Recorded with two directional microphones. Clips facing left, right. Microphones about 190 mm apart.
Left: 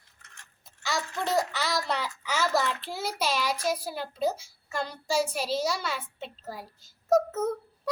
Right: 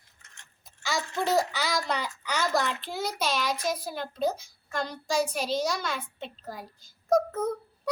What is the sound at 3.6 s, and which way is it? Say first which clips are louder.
A child's voice: left 1 dB; 10° left (ahead or behind).